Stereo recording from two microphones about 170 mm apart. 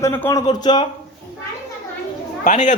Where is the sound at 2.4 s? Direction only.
45° left (ahead or behind).